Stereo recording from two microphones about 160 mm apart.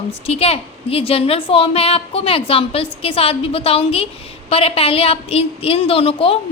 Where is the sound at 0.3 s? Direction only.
40° left (ahead or behind).